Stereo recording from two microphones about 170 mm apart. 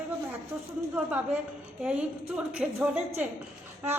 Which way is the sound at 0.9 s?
10° right (ahead or behind).